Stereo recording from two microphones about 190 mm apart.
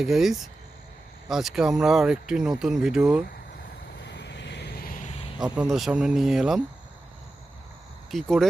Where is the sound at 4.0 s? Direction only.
65° left (ahead or behind).